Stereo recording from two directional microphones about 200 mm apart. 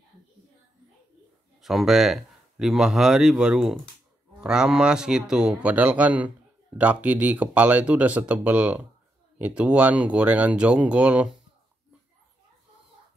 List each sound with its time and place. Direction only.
1.6 s speech: centre (ahead or behind)